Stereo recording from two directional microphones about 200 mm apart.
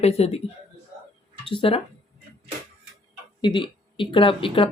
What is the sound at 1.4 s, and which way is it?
Speech, 25° left (ahead or behind).